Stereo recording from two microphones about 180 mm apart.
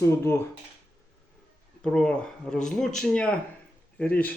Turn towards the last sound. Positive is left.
turn(degrees=10)  # may be behind; listen again after turning